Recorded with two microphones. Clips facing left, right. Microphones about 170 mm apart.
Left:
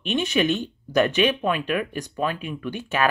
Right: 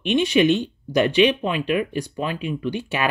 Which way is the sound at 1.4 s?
50° left (ahead or behind).